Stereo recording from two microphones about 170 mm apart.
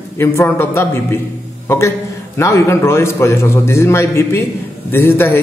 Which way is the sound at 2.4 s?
15° left (ahead or behind).